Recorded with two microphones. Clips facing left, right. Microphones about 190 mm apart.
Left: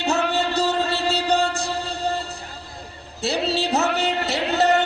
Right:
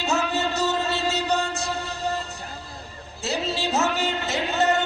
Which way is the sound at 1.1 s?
35° left (ahead or behind).